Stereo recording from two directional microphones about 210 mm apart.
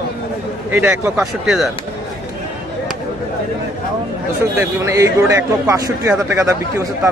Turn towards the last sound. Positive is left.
turn(degrees=-15)  # may be behind; listen again after turning